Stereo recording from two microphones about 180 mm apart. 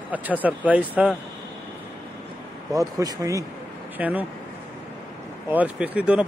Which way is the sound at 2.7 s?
20° right (ahead or behind).